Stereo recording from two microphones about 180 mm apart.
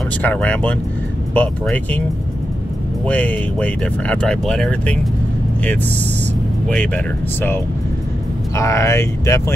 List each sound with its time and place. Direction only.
0.2 s speech: 5° left (ahead or behind)
3.1 s speech: 10° left (ahead or behind)
6.7 s speech: 10° left (ahead or behind)
8.5 s speech: 15° left (ahead or behind)